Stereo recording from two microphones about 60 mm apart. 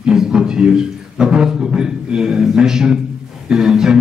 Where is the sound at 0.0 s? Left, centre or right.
Centre.